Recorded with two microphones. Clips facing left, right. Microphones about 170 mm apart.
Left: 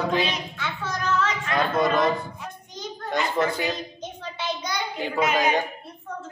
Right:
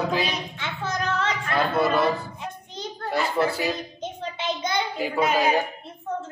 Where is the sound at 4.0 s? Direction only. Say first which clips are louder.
Right 2 dB; 20° right (ahead or behind).